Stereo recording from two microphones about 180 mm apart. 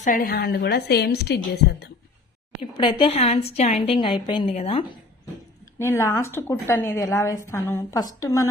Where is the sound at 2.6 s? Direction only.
30° left (ahead or behind).